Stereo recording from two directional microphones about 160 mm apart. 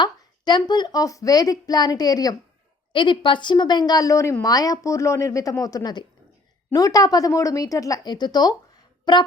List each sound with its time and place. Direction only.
0.0 s a woman's voice: 25° left (ahead or behind)